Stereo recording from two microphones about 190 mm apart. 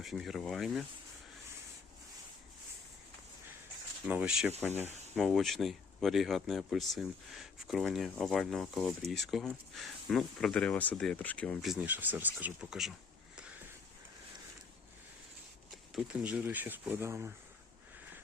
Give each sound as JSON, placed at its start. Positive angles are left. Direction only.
{"t": 0.0, "sound": "speech", "side_deg": 0}
{"t": 4.0, "sound": "speech", "side_deg": -5}
{"t": 16.0, "sound": "speech", "side_deg": -5}